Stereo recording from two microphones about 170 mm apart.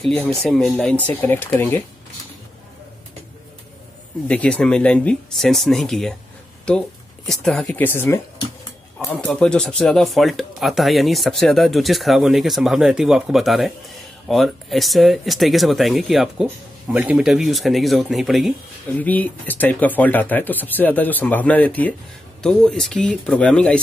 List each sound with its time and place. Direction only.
0.0 s speech: 5° left (ahead or behind)
4.3 s speech: 5° left (ahead or behind)
7.2 s speech: centre (ahead or behind)
8.4 s a sound: 20° left (ahead or behind)
9.1 s speech: 5° left (ahead or behind)
18.9 s speech: 10° left (ahead or behind)